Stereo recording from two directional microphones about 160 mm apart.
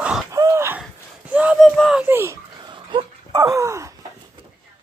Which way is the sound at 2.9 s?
30° right (ahead or behind).